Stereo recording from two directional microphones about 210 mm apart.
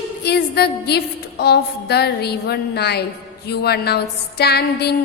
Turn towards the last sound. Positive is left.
turn(degrees=50)  # may be behind; listen again after turning